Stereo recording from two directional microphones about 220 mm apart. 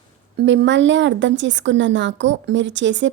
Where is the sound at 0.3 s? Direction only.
55° right (ahead or behind).